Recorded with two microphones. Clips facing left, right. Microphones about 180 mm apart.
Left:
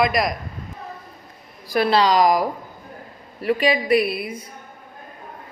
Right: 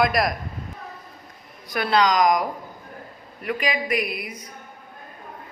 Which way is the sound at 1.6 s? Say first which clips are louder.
Left 3 dB; 30° left (ahead or behind).